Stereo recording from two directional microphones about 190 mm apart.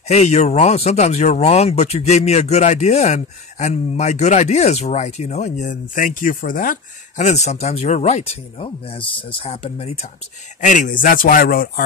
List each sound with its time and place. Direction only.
0.1 s a man's voice: 35° left (ahead or behind)